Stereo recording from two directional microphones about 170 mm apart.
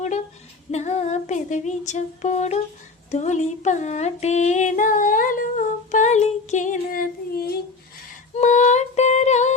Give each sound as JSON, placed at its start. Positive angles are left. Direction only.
{"t": 0.7, "sound": "female singing", "side_deg": 40}
{"t": 8.4, "sound": "female singing", "side_deg": 45}